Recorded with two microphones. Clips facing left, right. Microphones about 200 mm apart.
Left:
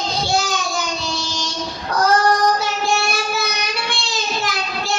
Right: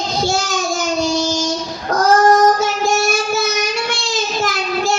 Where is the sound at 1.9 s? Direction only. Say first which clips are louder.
Right 5 dB; 45° right (ahead or behind).